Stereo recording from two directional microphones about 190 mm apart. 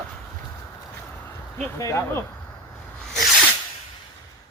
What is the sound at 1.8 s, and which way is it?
Speech, 15° left (ahead or behind).